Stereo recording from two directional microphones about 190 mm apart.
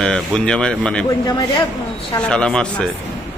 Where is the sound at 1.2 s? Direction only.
20° left (ahead or behind).